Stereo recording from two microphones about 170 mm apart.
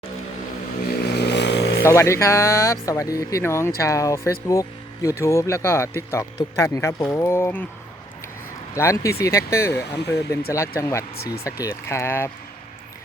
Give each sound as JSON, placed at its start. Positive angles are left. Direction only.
{"t": 0.9, "sound": "vehicle", "side_deg": 75}
{"t": 1.8, "sound": "speech", "side_deg": 15}
{"t": 8.7, "sound": "speech", "side_deg": 15}